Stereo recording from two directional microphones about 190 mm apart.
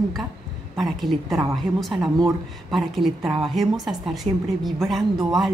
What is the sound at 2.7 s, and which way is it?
A woman's voice, centre (ahead or behind).